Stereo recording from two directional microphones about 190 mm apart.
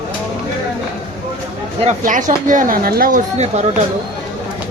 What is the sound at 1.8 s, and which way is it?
Speech, 45° right (ahead or behind).